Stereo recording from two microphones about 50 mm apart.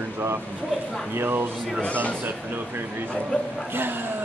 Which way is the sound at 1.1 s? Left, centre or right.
Right.